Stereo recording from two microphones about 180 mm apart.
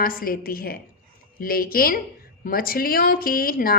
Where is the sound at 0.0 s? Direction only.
55° left (ahead or behind).